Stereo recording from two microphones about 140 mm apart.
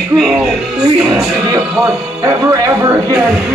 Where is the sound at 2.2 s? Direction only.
25° right (ahead or behind).